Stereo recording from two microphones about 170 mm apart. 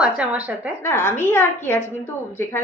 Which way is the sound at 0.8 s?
15° left (ahead or behind).